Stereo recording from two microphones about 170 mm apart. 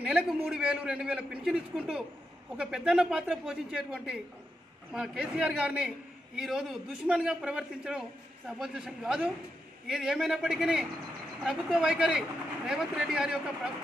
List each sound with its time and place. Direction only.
0.0 s a man's voice: 5° right (ahead or behind)